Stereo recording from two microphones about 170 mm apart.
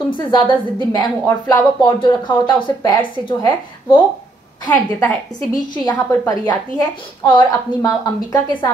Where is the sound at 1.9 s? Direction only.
30° left (ahead or behind).